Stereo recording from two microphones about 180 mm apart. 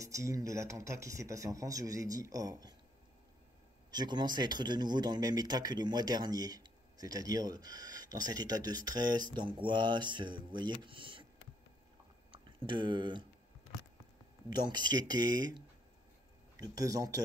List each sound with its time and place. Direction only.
0.0 s speech: 15° right (ahead or behind)
3.9 s speech: 25° right (ahead or behind)
12.3 s speech: 30° right (ahead or behind)
14.5 s speech: 25° right (ahead or behind)